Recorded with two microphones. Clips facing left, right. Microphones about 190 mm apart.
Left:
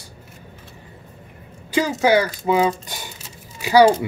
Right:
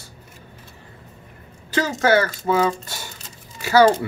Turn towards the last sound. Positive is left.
turn(degrees=15)  # may be behind; listen again after turning